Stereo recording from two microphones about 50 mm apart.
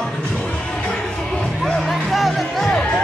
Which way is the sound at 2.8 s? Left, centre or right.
Centre.